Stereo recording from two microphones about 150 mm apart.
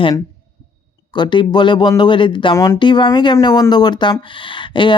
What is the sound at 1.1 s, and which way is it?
Speech, 30° left (ahead or behind).